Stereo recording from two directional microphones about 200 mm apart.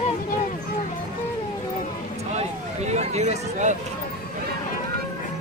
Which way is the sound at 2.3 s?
35° right (ahead or behind).